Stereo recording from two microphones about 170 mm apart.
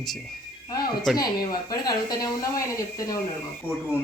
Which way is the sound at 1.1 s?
20° left (ahead or behind).